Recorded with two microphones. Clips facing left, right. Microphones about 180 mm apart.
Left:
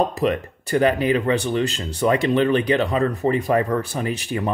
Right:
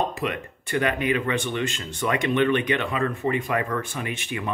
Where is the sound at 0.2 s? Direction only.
35° left (ahead or behind).